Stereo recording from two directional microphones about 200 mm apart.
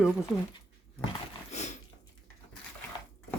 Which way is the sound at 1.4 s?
35° left (ahead or behind).